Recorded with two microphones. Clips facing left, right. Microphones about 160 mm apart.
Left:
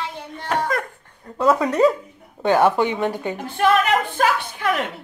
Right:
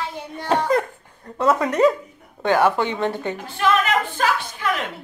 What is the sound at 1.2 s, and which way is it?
Speech, 5° left (ahead or behind).